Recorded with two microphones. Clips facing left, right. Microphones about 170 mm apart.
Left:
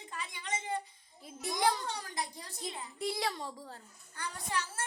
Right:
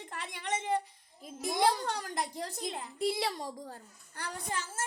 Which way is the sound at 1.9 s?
75° right (ahead or behind).